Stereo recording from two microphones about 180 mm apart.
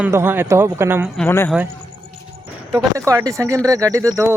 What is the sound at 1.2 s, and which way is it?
Speech, 10° left (ahead or behind).